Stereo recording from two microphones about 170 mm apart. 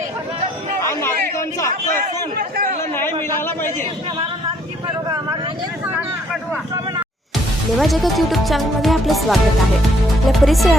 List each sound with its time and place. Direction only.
0.8 s chatter: 15° left (ahead or behind)
7.8 s speech: centre (ahead or behind)